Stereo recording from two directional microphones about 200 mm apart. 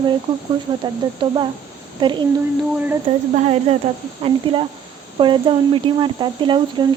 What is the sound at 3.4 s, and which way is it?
Speech, 30° right (ahead or behind).